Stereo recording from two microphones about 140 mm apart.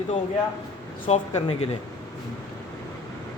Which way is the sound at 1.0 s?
45° left (ahead or behind).